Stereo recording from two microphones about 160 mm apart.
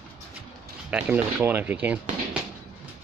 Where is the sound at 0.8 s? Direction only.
10° right (ahead or behind).